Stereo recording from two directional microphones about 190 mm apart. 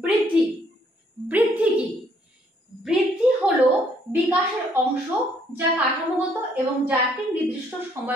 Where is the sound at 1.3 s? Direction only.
10° right (ahead or behind).